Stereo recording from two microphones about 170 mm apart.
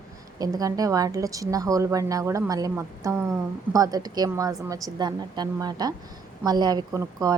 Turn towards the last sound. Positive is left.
turn(degrees=-20)  # may be behind; listen again after turning